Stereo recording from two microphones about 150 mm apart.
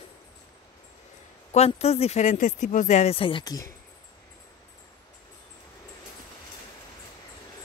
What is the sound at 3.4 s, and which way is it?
Speech, 25° left (ahead or behind).